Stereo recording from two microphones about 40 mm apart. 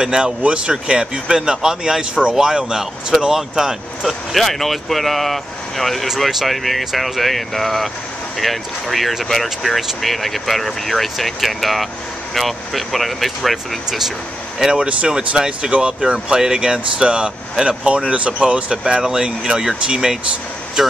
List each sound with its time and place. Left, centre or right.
0.0 s speech: right
4.3 s speech: centre
13.8 s speech: centre
14.7 s speech: right